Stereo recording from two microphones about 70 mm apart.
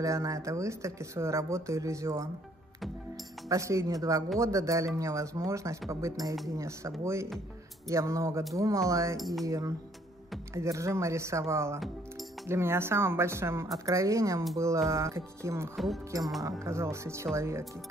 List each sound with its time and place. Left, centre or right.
0.0 s speech: right
3.4 s speech: right
9.2 s cutlery: centre
9.5 s speech: right
10.5 s speech: right
13.8 s speech: right
15.7 s cutlery: centre
16.6 s speech: right